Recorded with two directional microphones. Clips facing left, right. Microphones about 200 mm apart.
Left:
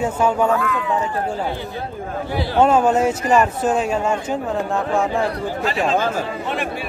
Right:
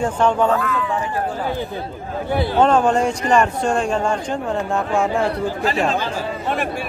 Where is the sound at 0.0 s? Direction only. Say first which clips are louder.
Right 1 dB; 5° left (ahead or behind).